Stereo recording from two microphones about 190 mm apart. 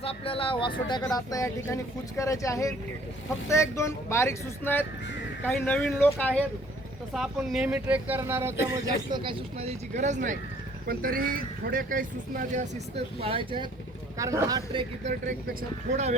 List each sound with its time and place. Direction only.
0.0 s speech: 30° left (ahead or behind); by 12.6 s 45° right (ahead or behind)
13.1 s speech: 30° right (ahead or behind)
15.9 s speech: 40° right (ahead or behind)